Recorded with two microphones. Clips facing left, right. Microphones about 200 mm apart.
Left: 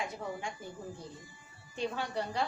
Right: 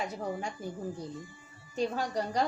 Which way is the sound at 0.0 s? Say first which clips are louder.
Right 3 dB; 40° right (ahead or behind).